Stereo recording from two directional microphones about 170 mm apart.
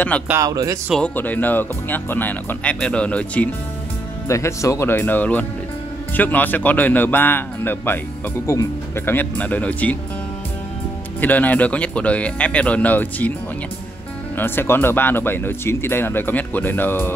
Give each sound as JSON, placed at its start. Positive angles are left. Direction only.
{"t": 0.3, "sound": "speech", "side_deg": -20}
{"t": 0.8, "sound": "speech", "side_deg": 5}
{"t": 11.1, "sound": "speech", "side_deg": 10}
{"t": 14.3, "sound": "speech", "side_deg": 10}